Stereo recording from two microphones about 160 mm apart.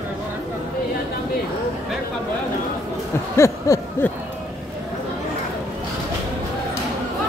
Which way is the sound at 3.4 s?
15° left (ahead or behind).